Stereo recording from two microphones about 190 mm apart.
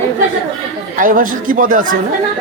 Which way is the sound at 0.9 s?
45° right (ahead or behind).